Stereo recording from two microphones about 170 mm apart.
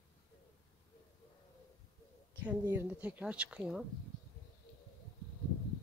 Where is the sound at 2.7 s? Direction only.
10° right (ahead or behind).